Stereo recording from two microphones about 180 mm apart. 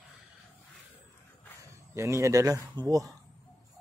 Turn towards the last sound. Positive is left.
turn(degrees=-20)  # may be behind; listen again after turning